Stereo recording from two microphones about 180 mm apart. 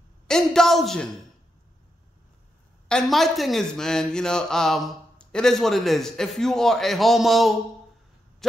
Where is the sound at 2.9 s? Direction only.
Centre (ahead or behind).